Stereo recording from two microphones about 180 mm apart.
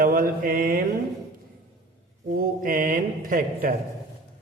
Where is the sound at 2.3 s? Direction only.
50° right (ahead or behind).